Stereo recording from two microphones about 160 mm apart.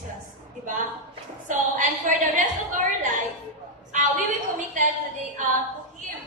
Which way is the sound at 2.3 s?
50° right (ahead or behind).